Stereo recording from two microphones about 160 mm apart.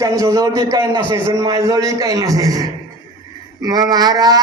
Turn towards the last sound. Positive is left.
turn(degrees=-25)  # may be behind; listen again after turning